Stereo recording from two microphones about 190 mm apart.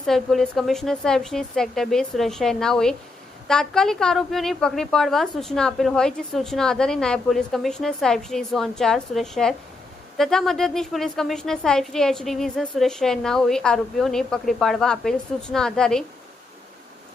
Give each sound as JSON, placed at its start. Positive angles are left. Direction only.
{"t": 0.0, "sound": "a woman's voice", "side_deg": 0}